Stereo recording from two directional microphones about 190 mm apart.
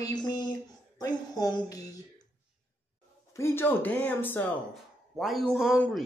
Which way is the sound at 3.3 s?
15° left (ahead or behind).